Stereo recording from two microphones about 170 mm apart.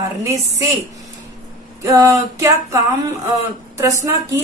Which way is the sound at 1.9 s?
20° right (ahead or behind).